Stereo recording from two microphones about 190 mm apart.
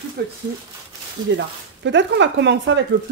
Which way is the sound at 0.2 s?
55° right (ahead or behind).